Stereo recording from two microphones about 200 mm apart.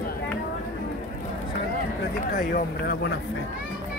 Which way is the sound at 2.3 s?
45° left (ahead or behind).